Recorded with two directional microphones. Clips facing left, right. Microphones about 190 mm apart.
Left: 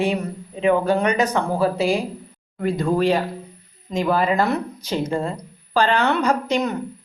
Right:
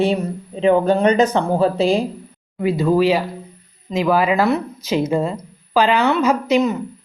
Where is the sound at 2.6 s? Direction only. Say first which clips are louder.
Right 4 dB; 5° right (ahead or behind).